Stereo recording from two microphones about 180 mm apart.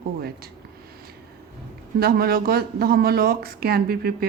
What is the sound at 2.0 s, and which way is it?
Speech, 60° right (ahead or behind).